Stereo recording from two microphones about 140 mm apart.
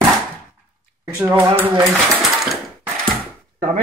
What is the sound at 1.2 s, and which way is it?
Speech, 15° right (ahead or behind).